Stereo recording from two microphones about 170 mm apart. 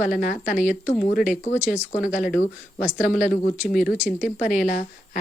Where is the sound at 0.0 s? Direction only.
50° left (ahead or behind).